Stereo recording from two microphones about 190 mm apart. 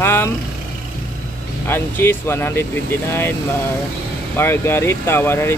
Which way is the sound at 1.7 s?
10° left (ahead or behind).